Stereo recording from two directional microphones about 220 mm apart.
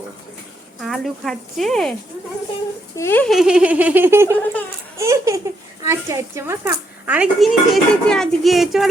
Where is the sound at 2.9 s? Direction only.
10° left (ahead or behind); by 4.3 s 10° right (ahead or behind).